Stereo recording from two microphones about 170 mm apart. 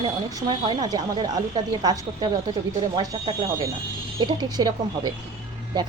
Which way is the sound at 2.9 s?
25° right (ahead or behind).